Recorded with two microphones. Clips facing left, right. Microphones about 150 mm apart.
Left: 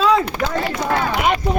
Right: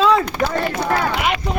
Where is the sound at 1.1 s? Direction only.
45° left (ahead or behind).